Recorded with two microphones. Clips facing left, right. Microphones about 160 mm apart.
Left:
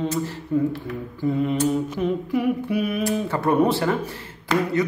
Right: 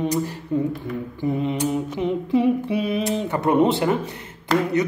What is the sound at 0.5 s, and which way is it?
Speech, 20° right (ahead or behind).